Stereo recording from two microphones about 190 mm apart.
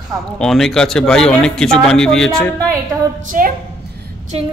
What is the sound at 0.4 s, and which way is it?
Speech, centre (ahead or behind).